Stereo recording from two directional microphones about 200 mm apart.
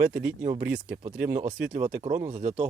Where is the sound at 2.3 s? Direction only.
35° right (ahead or behind).